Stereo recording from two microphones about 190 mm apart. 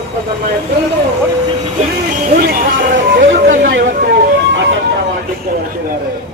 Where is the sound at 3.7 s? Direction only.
60° right (ahead or behind).